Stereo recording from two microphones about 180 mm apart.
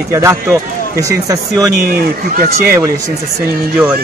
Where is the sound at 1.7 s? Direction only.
60° right (ahead or behind).